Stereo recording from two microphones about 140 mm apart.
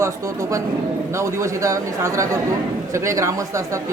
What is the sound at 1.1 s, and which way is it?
Speech, 20° right (ahead or behind).